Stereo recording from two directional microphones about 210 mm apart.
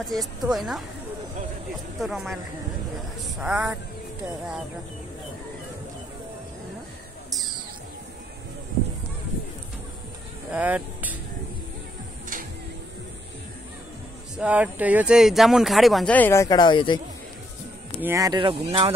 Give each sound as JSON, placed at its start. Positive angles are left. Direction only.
{"t": 0.0, "sound": "speech", "side_deg": 0}
{"t": 2.0, "sound": "speech", "side_deg": 0}
{"t": 3.3, "sound": "speech", "side_deg": -5}
{"t": 10.5, "sound": "speech", "side_deg": -5}
{"t": 14.4, "sound": "speech", "side_deg": -5}
{"t": 18.0, "sound": "speech", "side_deg": -15}